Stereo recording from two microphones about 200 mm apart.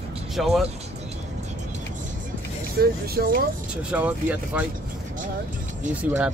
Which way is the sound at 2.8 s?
50° right (ahead or behind).